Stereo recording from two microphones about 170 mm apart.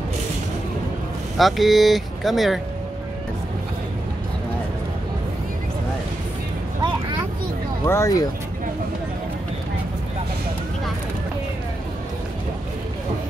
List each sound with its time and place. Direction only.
1.4 s speech: centre (ahead or behind)
7.8 s speech: 15° left (ahead or behind)